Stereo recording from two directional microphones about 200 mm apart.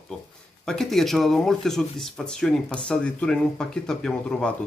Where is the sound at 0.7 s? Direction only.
Centre (ahead or behind).